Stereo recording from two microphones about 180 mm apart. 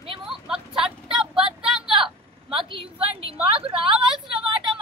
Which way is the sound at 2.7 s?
30° right (ahead or behind).